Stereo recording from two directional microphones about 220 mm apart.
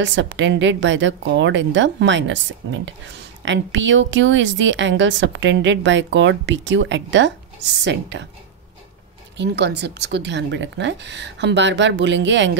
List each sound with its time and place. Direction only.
0.0 s a woman's voice: 55° right (ahead or behind)
9.4 s a woman's voice: 50° right (ahead or behind)